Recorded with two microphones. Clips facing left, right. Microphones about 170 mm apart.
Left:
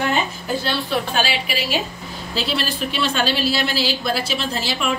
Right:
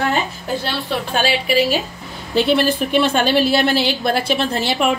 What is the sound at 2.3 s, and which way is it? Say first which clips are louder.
A woman's voice: right 9 dB; 55° right (ahead or behind).